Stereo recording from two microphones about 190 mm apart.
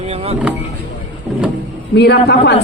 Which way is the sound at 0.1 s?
30° right (ahead or behind).